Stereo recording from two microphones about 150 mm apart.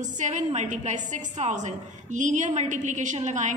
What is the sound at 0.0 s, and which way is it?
A woman's voice, 55° right (ahead or behind).